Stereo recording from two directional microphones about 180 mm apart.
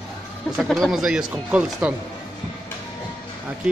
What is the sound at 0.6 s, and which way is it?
Speech, centre (ahead or behind).